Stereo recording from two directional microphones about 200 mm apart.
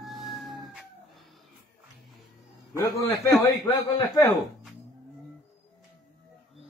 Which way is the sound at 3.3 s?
15° left (ahead or behind).